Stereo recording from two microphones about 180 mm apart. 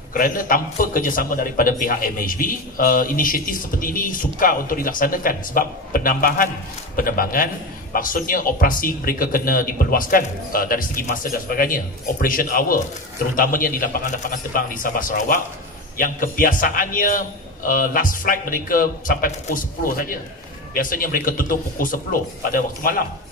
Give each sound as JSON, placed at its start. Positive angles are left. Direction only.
{"t": 0.1, "sound": "a man's voice", "side_deg": 50}